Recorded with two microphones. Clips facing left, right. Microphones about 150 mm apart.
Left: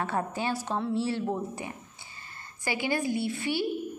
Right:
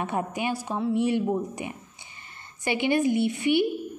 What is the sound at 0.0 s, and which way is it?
A woman's voice, 15° right (ahead or behind).